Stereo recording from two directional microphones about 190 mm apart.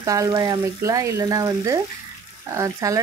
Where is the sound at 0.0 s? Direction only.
15° right (ahead or behind).